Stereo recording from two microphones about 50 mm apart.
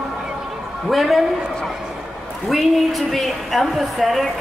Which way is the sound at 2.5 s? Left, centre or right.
Centre.